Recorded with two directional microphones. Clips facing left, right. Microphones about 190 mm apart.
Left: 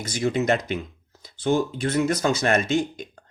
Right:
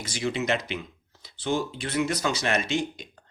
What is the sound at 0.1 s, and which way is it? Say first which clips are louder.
Speech: left 5 dB; 50° left (ahead or behind).